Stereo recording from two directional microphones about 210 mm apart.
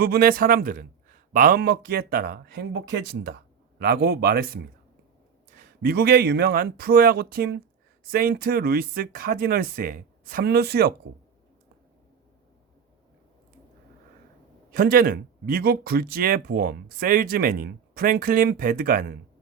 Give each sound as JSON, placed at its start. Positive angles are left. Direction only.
{"t": 0.0, "sound": "speech", "side_deg": -45}
{"t": 14.7, "sound": "speech", "side_deg": -45}